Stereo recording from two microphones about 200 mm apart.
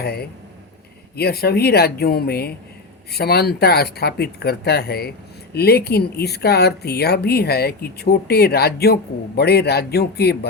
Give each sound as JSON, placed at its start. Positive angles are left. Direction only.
{"t": 0.0, "sound": "speech", "side_deg": 50}